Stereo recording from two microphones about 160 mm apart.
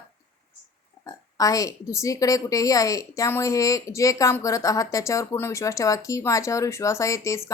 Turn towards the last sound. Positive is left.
turn(degrees=20)  # may be behind; listen again after turning